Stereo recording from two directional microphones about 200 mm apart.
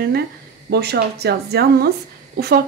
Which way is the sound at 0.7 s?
55° right (ahead or behind).